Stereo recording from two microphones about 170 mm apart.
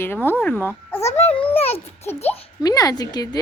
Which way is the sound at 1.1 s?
40° left (ahead or behind).